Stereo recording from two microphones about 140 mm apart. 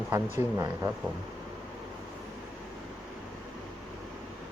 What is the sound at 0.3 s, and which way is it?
Speech, 20° right (ahead or behind).